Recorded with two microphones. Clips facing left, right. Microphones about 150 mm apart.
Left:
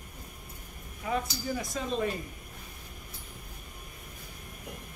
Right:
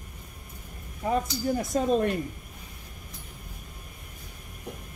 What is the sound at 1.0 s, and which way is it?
Speech, 35° right (ahead or behind).